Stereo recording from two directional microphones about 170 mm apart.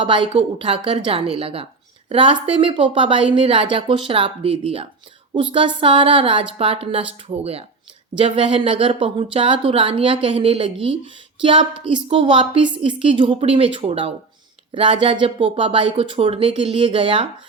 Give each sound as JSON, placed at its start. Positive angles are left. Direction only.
{"t": 0.0, "sound": "a woman's voice", "side_deg": -30}